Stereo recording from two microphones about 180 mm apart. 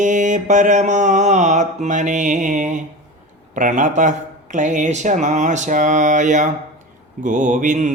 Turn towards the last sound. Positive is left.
turn(degrees=-45)  # may be behind; listen again after turning